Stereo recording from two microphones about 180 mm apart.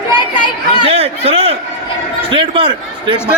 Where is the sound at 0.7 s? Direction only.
30° right (ahead or behind).